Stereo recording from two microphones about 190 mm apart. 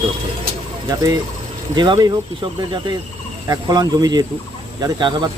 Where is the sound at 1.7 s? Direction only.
25° right (ahead or behind).